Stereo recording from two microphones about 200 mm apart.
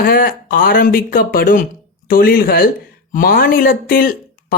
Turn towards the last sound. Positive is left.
turn(degrees=45)  # may be behind; listen again after turning